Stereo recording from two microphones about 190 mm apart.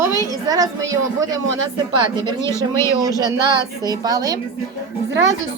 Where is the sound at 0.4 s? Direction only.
20° right (ahead or behind).